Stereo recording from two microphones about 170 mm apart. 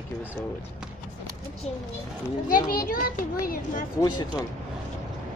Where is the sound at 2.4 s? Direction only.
55° left (ahead or behind).